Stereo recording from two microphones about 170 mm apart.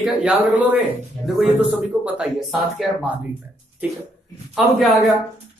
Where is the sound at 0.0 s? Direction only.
10° right (ahead or behind).